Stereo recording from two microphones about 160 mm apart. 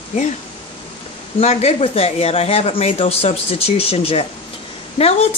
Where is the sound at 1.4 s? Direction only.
40° left (ahead or behind).